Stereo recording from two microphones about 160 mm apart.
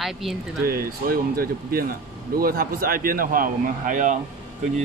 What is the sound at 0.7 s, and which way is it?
A man's voice, 70° right (ahead or behind).